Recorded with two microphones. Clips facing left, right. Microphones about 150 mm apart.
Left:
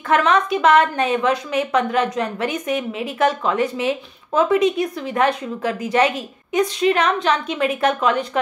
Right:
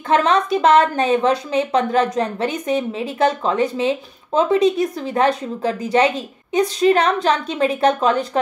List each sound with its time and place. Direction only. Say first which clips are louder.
0.1 s a woman's voice: right 1 dB; 30° right (ahead or behind)